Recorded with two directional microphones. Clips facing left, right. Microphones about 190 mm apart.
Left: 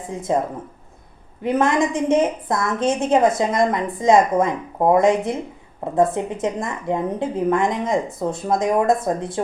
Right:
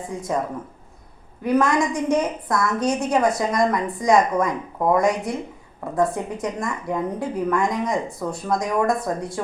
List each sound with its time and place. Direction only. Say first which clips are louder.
0.1 s a woman's voice: left 2 dB; 25° left (ahead or behind)
1.4 s a woman's voice: left 1 dB; 25° left (ahead or behind)